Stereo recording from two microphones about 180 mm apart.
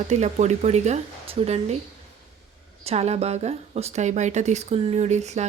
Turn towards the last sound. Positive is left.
turn(degrees=-40)  # may be behind; listen again after turning